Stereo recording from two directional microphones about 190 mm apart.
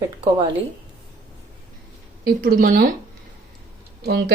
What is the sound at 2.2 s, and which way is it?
Speech, 50° right (ahead or behind).